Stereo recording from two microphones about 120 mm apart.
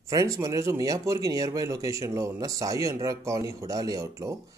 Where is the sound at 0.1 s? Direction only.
30° right (ahead or behind).